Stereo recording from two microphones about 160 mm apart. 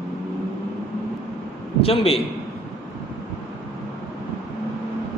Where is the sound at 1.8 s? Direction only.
35° left (ahead or behind).